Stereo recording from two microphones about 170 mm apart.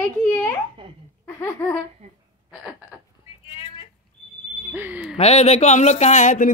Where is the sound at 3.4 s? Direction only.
30° left (ahead or behind).